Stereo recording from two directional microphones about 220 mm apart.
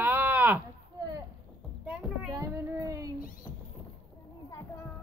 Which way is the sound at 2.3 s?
15° right (ahead or behind).